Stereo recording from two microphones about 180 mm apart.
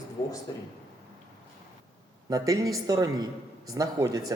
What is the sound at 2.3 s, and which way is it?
Speech, 20° right (ahead or behind).